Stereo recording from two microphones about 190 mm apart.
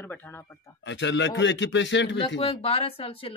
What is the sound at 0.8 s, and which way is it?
A man's voice, 70° left (ahead or behind).